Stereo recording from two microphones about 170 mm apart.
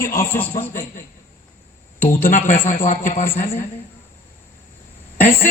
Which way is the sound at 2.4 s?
50° left (ahead or behind).